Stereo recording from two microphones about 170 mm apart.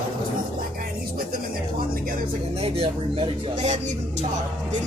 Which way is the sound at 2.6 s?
35° right (ahead or behind).